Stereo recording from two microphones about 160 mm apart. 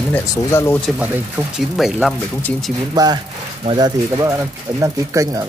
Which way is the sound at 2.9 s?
25° right (ahead or behind).